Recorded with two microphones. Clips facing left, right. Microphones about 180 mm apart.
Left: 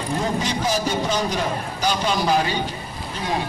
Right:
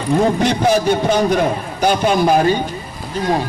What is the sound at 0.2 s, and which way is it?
A man's voice, 60° right (ahead or behind).